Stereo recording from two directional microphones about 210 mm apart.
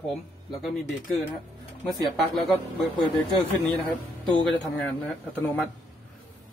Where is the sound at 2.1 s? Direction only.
Centre (ahead or behind).